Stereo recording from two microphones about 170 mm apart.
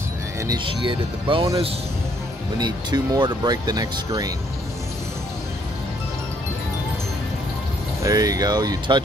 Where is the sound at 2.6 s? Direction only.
25° right (ahead or behind).